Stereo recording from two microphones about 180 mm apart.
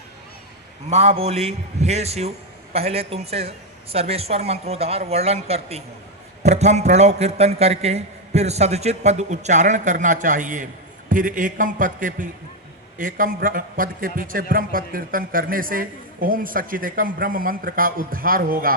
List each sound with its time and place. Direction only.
0.9 s a man's voice: 35° right (ahead or behind); by 18.8 s 50° right (ahead or behind)